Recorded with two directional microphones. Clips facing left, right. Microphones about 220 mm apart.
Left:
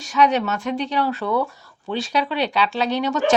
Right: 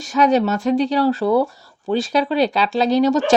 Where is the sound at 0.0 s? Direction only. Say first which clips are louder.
Right 3 dB; 40° right (ahead or behind).